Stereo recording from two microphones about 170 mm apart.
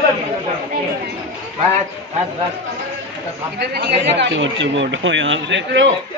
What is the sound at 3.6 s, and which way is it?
Speech, 75° right (ahead or behind).